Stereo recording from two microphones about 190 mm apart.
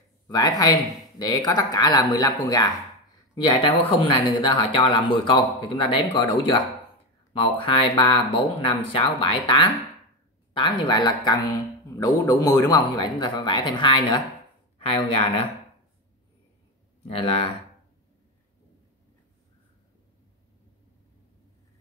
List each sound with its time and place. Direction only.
0.3 s a man's voice: 20° left (ahead or behind)
17.1 s speech: 30° left (ahead or behind)